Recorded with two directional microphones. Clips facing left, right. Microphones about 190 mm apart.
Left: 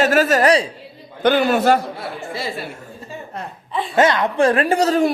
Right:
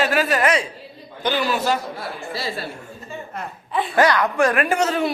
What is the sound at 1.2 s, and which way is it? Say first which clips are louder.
Speech: left 6 dB; 55° left (ahead or behind).